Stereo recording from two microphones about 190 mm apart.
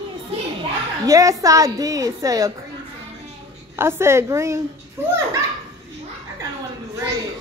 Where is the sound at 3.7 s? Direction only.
15° right (ahead or behind).